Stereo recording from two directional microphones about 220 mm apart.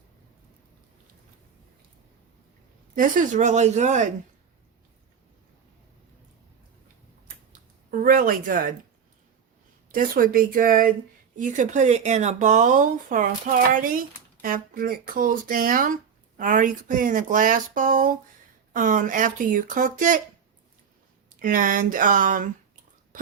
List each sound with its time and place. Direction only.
2.9 s speech: 40° right (ahead or behind)
7.5 s a sound: 40° right (ahead or behind)
9.9 s speech: 40° right (ahead or behind)
21.3 s speech: 40° right (ahead or behind)